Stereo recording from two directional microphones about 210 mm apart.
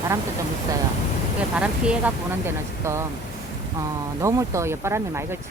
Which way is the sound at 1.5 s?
5° right (ahead or behind).